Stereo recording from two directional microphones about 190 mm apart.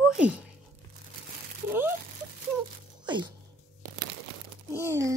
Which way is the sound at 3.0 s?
25° right (ahead or behind).